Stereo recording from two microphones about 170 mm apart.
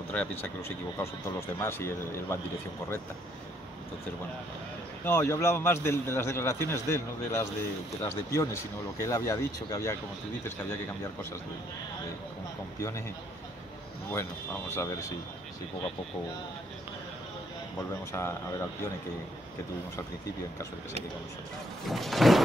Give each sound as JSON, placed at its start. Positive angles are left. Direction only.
{"t": 0.1, "sound": "a man's voice", "side_deg": 10}
{"t": 5.0, "sound": "a man's voice", "side_deg": 15}
{"t": 14.1, "sound": "a man's voice", "side_deg": 15}
{"t": 18.1, "sound": "a man's voice", "side_deg": 15}
{"t": 21.8, "sound": "music", "side_deg": 0}